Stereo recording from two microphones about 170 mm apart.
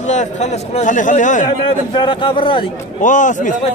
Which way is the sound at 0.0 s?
45° left (ahead or behind).